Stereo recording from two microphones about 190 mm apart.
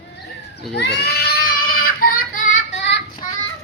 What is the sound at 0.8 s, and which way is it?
Child singing, 60° left (ahead or behind).